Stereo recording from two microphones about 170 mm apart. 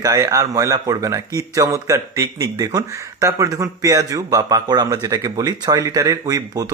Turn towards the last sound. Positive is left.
turn(degrees=-20)  # may be behind; listen again after turning